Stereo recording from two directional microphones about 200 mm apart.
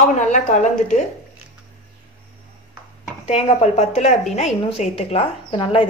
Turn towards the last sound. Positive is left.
turn(degrees=25)  # may be behind; listen again after turning